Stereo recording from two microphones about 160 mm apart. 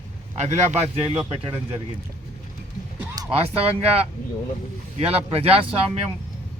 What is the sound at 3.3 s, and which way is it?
Speech, 40° right (ahead or behind).